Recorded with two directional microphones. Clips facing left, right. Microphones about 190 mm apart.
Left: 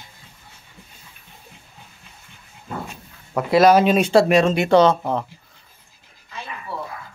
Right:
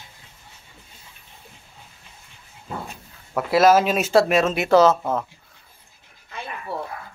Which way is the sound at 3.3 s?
Centre (ahead or behind).